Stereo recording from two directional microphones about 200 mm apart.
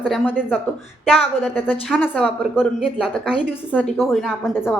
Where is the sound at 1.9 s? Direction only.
Centre (ahead or behind).